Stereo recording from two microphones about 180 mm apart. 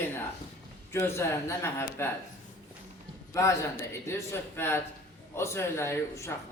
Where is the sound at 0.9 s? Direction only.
15° left (ahead or behind).